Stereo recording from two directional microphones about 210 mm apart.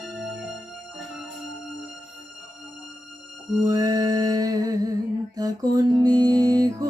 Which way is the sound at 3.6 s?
15° right (ahead or behind).